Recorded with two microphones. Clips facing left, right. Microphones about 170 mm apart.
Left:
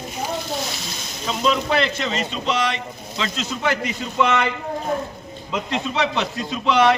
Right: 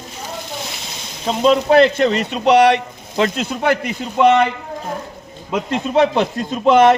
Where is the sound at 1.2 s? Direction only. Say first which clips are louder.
Right 7 dB; 40° right (ahead or behind); by 4.5 s 55° right (ahead or behind).